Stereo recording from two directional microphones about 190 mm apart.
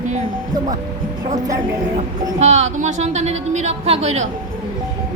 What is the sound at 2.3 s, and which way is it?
Speech, 35° right (ahead or behind).